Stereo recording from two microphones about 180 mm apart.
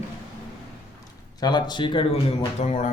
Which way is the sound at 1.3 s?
25° left (ahead or behind).